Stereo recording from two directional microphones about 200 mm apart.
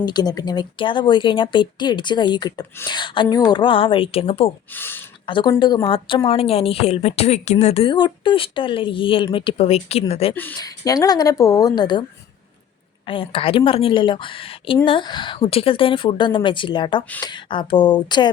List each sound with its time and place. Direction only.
0.0 s a woman's voice: 20° left (ahead or behind)
4.7 s speech: 10° left (ahead or behind)
5.2 s a woman's voice: 25° left (ahead or behind)
10.3 s speech: 15° left (ahead or behind)
13.1 s a woman's voice: 25° left (ahead or behind)